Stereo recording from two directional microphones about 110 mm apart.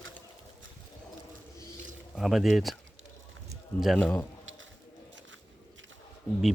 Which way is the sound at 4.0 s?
10° left (ahead or behind).